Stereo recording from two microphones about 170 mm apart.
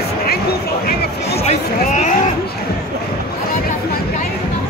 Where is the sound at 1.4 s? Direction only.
40° left (ahead or behind).